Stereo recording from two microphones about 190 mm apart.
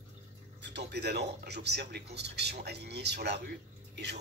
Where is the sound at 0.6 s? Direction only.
65° right (ahead or behind).